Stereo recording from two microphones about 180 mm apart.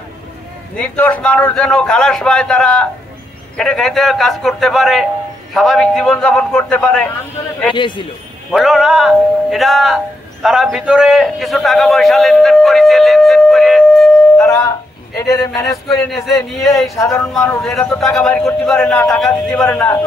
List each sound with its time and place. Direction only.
0.7 s speech: 10° left (ahead or behind)
7.7 s a man's voice: 25° left (ahead or behind)
8.5 s speech: centre (ahead or behind)
14.4 s a man's voice: 15° left (ahead or behind)
16.5 s speech: centre (ahead or behind)
17.0 s a man's voice: 15° left (ahead or behind)
17.6 s a man's voice: 5° left (ahead or behind)